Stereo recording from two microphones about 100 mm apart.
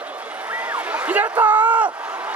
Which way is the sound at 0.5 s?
15° right (ahead or behind).